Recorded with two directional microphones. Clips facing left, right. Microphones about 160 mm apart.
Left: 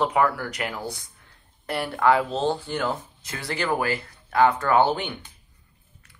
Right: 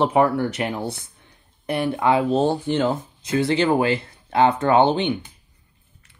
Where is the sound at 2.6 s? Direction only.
25° right (ahead or behind).